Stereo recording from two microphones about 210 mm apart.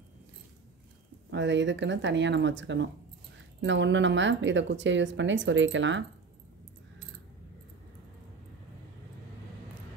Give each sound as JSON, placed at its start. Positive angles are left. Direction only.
{"t": 1.3, "sound": "speech", "side_deg": -60}